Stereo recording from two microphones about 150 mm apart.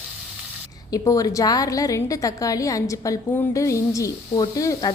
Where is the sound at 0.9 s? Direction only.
25° left (ahead or behind).